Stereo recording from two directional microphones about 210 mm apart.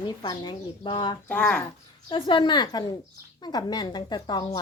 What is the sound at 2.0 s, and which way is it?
Speech, 25° left (ahead or behind).